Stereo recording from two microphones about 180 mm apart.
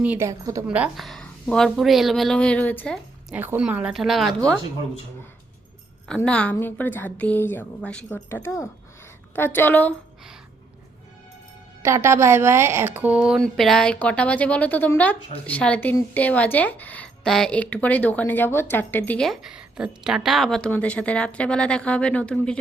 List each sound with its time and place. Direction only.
0.0 s a woman's voice: 10° right (ahead or behind)
0.7 s speech: 5° right (ahead or behind)
3.3 s speech: 10° right (ahead or behind)
6.1 s speech: 5° left (ahead or behind)
11.8 s speech: 15° right (ahead or behind); by 22.5 s 5° left (ahead or behind)